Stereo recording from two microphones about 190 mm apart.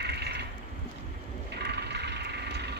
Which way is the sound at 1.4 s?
60° right (ahead or behind).